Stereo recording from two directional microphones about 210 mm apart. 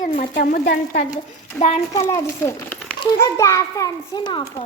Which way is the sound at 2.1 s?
15° left (ahead or behind).